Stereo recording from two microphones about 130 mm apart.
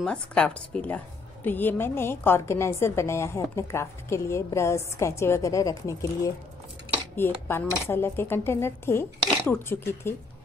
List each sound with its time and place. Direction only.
0.0 s a woman's voice: 10° left (ahead or behind)